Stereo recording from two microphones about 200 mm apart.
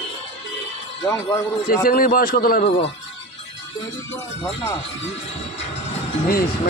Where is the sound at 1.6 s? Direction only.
45° left (ahead or behind).